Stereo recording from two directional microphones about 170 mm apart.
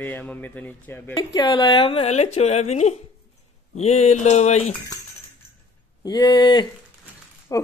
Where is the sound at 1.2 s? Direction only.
25° left (ahead or behind); by 4.6 s 40° left (ahead or behind).